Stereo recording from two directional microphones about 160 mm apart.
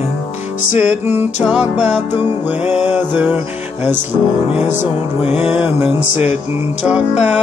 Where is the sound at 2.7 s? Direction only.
10° right (ahead or behind).